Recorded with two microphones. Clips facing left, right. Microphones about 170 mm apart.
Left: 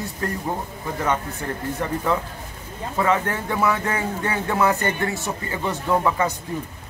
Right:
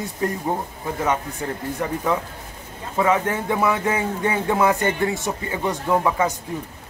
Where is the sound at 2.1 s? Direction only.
15° right (ahead or behind).